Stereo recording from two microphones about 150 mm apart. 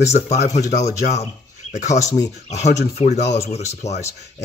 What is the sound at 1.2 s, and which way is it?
Bird, 50° left (ahead or behind).